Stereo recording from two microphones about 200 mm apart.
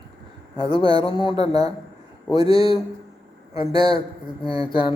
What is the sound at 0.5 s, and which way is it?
A man's voice, 20° left (ahead or behind).